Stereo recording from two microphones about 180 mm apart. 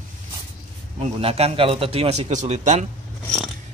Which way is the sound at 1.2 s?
35° right (ahead or behind).